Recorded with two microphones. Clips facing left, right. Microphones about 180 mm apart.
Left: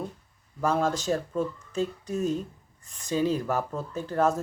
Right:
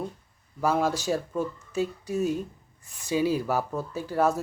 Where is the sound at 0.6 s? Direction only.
10° right (ahead or behind).